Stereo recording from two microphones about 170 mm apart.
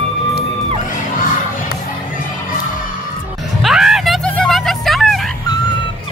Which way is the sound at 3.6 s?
Centre (ahead or behind).